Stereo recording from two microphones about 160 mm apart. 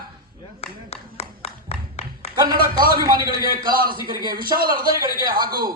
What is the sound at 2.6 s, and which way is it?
A man's voice, 65° right (ahead or behind).